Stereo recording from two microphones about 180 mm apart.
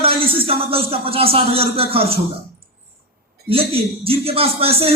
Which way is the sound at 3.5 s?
30° right (ahead or behind).